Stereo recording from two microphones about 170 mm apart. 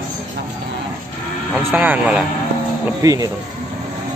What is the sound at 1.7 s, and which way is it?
Speech, 10° right (ahead or behind).